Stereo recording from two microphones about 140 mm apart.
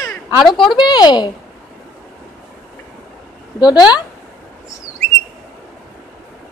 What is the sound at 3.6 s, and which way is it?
Speech, 30° left (ahead or behind).